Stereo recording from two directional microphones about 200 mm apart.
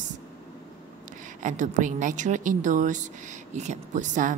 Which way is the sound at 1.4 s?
40° right (ahead or behind).